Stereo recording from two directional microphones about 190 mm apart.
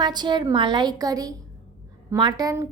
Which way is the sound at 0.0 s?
20° right (ahead or behind).